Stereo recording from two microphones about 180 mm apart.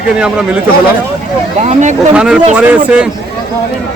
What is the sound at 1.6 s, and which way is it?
Speech, 40° right (ahead or behind).